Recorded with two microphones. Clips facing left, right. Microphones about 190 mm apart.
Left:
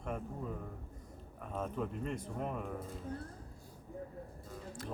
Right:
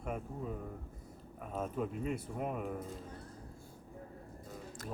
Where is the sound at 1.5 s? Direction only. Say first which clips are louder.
Right 1 dB; 5° right (ahead or behind).